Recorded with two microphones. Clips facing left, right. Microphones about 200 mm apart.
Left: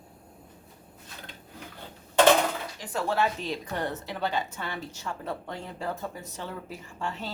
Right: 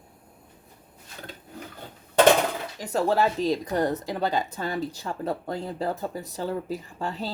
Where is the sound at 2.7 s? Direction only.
40° right (ahead or behind).